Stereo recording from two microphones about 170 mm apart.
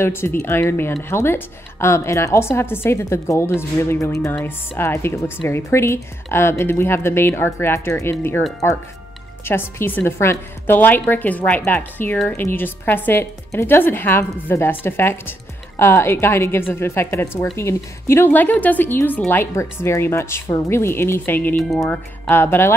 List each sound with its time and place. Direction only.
0.0 s a woman's voice: 15° left (ahead or behind)